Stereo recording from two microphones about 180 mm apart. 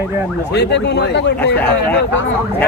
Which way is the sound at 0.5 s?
70° left (ahead or behind).